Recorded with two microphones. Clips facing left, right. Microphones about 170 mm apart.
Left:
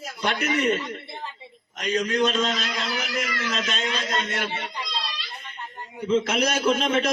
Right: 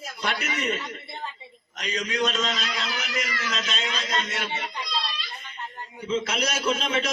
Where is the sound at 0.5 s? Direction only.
55° left (ahead or behind).